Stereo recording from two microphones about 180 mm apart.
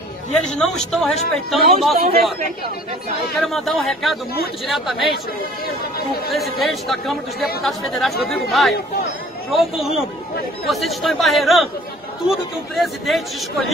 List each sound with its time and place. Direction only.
0.3 s speech: 5° left (ahead or behind)
3.3 s speech: centre (ahead or behind)
5.9 s speech: 55° left (ahead or behind)
6.6 s speech: centre (ahead or behind)